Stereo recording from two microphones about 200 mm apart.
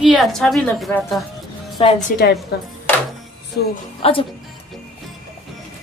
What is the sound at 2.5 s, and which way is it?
Speech, 55° left (ahead or behind).